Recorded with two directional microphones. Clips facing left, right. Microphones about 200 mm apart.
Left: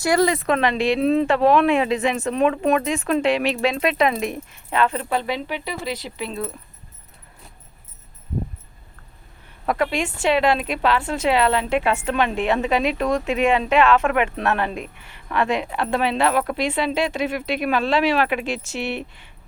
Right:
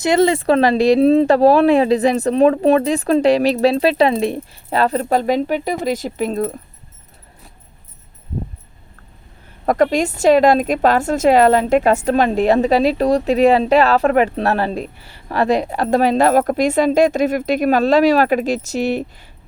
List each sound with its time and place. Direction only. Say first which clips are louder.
0.0 s a woman's voice: right 4 dB; 25° right (ahead or behind); by 6.6 s 40° right (ahead or behind)
9.6 s a woman's voice: right 7 dB; 40° right (ahead or behind)